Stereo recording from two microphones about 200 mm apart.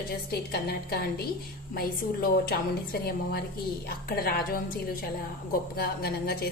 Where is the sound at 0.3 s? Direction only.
55° left (ahead or behind).